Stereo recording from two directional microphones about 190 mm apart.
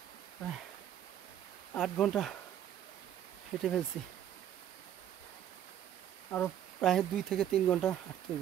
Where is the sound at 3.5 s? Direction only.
Centre (ahead or behind).